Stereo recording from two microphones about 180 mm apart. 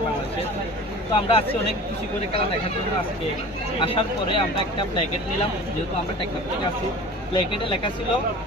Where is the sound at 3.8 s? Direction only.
30° left (ahead or behind).